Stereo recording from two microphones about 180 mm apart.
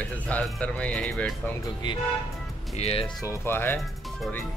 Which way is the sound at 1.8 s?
25° left (ahead or behind).